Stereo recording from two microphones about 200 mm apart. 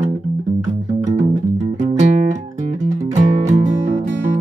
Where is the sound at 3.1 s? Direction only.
35° right (ahead or behind).